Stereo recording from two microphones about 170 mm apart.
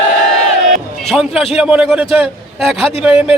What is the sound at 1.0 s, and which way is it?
A man's voice, centre (ahead or behind).